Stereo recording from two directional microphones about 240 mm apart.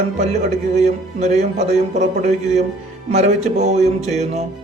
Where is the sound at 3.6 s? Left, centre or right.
Right.